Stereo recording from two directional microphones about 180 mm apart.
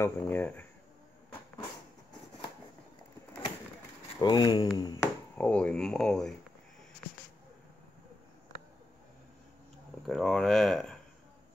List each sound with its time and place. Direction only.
0.0 s speech: 15° left (ahead or behind)
4.2 s speech: 25° left (ahead or behind)
5.4 s speech: 5° left (ahead or behind)
10.0 s speech: 5° left (ahead or behind)